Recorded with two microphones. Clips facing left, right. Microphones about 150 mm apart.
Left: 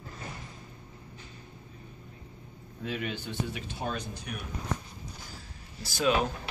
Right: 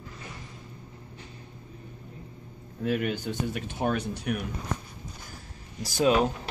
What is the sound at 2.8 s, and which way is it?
Speech, 50° right (ahead or behind).